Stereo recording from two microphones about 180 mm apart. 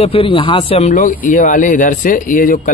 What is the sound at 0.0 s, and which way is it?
Speech, 30° left (ahead or behind).